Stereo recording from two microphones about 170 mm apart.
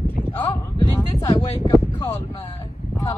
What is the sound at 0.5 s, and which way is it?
Speech, 20° left (ahead or behind).